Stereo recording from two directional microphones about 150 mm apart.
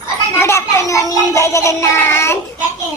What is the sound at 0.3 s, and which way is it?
Child singing, 15° left (ahead or behind).